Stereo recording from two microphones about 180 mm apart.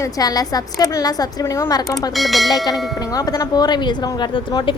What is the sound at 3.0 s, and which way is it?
A woman's voice, 20° left (ahead or behind).